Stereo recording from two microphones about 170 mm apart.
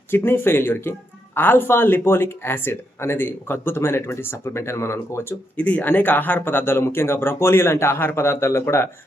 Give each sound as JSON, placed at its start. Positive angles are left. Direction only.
{"t": 0.1, "sound": "speech", "side_deg": 15}